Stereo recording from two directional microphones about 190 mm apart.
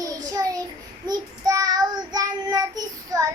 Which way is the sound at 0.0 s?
20° right (ahead or behind).